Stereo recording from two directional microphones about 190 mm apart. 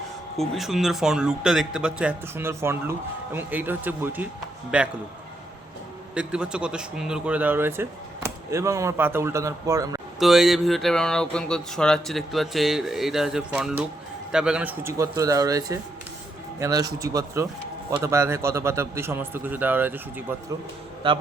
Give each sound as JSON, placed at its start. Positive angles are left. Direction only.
{"t": 0.3, "sound": "speech", "side_deg": 0}
{"t": 6.1, "sound": "speech", "side_deg": -5}
{"t": 10.2, "sound": "speech", "side_deg": 0}
{"t": 21.0, "sound": "a man's voice", "side_deg": -25}